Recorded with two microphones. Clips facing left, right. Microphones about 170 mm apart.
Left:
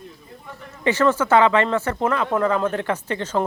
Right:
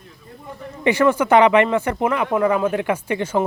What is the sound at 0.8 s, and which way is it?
Speech, 15° right (ahead or behind).